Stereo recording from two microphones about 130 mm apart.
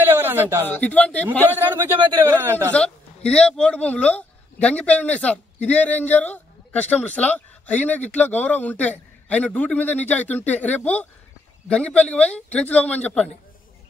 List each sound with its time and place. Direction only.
0.0 s a sound: 15° right (ahead or behind)
0.7 s a man's voice: 10° left (ahead or behind)
2.0 s a man's voice: 35° right (ahead or behind)
2.2 s speech: 20° right (ahead or behind)
2.7 s a man's voice: 10° left (ahead or behind)